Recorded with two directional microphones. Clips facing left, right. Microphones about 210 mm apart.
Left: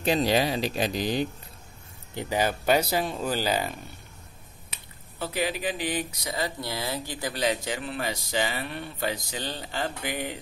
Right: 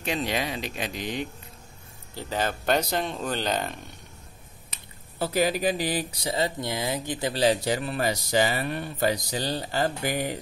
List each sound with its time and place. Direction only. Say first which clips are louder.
0.0 s speech: left 5 dB; 35° left (ahead or behind)
2.1 s speech: left 2 dB; 10° left (ahead or behind)
5.2 s speech: right 5 dB; 40° right (ahead or behind)